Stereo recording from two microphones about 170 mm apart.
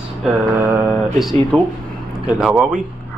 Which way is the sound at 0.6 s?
10° right (ahead or behind).